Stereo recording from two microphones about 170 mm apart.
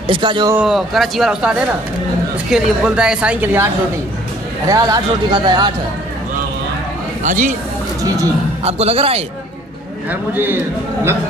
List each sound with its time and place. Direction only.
0.0 s speech: 30° right (ahead or behind)
0.6 s a woman's voice: centre (ahead or behind)
4.6 s speech: 20° right (ahead or behind)
7.2 s speech: 50° right (ahead or behind)
8.6 s speech: 35° right (ahead or behind)
10.3 s a woman's voice: 10° right (ahead or behind)